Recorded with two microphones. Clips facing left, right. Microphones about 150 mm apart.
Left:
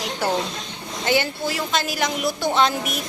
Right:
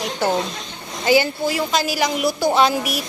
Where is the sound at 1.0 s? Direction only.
Centre (ahead or behind).